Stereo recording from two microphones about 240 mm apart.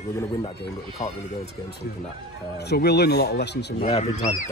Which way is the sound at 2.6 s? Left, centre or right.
Left.